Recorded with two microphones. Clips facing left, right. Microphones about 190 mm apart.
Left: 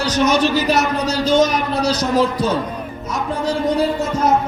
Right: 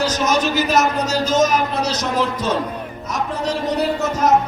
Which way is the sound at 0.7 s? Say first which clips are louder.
Even; 35° left (ahead or behind).